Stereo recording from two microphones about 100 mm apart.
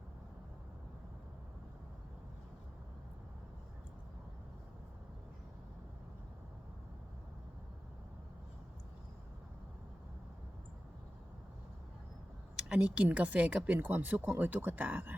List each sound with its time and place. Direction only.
12.5 s speech: 10° right (ahead or behind)